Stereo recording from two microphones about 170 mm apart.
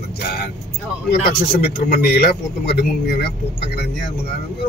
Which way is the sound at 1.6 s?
65° left (ahead or behind).